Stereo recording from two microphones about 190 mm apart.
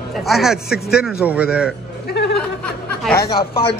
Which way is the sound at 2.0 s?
60° left (ahead or behind).